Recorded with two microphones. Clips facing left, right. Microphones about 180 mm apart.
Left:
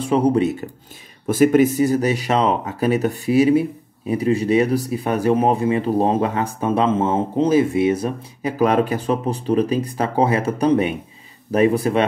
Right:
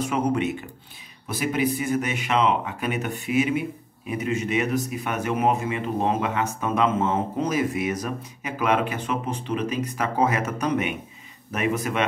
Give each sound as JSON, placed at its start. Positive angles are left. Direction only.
{"t": 0.0, "sound": "speech", "side_deg": 35}
{"t": 1.2, "sound": "speech", "side_deg": 50}